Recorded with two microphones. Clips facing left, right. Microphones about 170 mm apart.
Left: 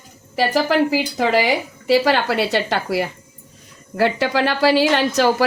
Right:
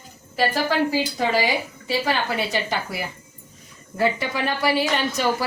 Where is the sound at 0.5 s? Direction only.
80° left.